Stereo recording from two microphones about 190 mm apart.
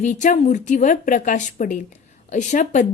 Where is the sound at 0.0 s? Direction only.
40° left (ahead or behind).